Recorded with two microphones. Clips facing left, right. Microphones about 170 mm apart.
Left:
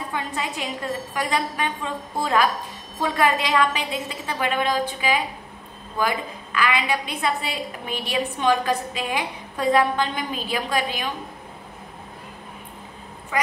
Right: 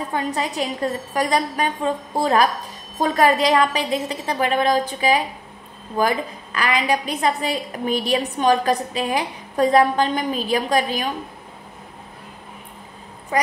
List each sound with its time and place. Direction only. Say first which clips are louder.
0.1 s a woman's voice: right 5 dB; 40° right (ahead or behind)
13.3 s quack: right 4 dB; 35° right (ahead or behind)